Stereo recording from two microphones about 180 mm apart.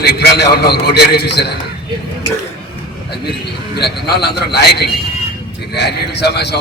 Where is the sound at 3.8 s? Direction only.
65° left (ahead or behind).